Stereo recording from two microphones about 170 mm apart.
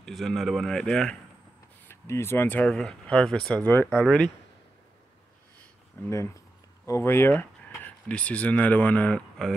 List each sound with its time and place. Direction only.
0.0 s speech: centre (ahead or behind)
1.9 s speech: 15° left (ahead or behind)
6.0 s speech: 15° left (ahead or behind)